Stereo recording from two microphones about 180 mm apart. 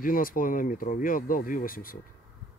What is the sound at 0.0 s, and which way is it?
Speech, 50° left (ahead or behind).